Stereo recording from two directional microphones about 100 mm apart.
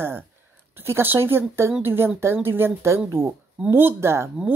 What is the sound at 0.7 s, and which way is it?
Speech, 25° right (ahead or behind).